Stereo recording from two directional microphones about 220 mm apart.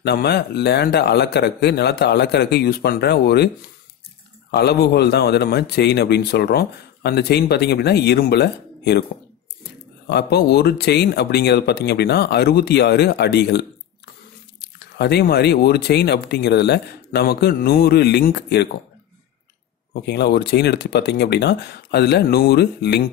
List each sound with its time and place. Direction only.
0.0 s a man's voice: 50° left (ahead or behind)
4.5 s a man's voice: 50° left (ahead or behind)
10.0 s a man's voice: 45° left (ahead or behind)
19.9 s a man's voice: 50° left (ahead or behind)